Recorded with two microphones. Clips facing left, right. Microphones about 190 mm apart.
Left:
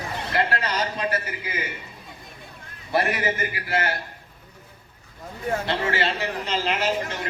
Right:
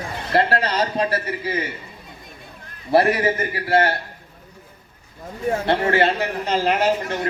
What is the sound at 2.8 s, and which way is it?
Speech, 30° right (ahead or behind).